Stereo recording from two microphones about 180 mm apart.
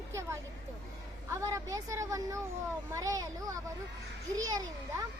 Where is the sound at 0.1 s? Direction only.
15° right (ahead or behind).